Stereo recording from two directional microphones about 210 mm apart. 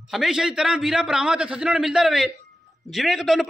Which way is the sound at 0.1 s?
Centre (ahead or behind).